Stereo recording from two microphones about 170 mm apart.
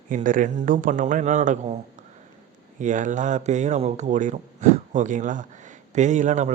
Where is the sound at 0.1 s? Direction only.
50° right (ahead or behind).